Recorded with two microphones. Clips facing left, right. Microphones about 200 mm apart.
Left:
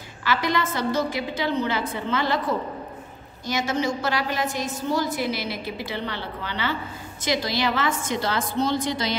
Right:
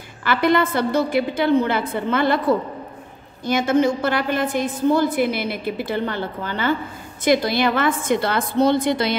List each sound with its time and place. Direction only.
0.2 s a woman's voice: 55° right (ahead or behind)
3.4 s a woman's voice: 55° right (ahead or behind)